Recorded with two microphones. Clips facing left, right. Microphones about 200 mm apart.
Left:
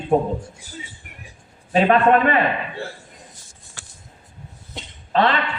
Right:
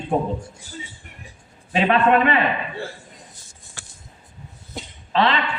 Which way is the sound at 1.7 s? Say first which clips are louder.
Left 2 dB; 45° left (ahead or behind).